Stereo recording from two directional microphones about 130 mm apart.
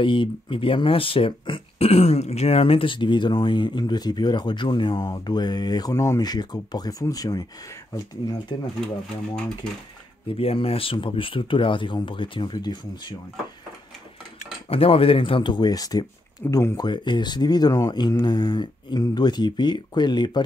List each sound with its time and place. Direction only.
0.0 s speech: 40° left (ahead or behind)
10.2 s speech: 50° left (ahead or behind)
14.7 s speech: 45° left (ahead or behind)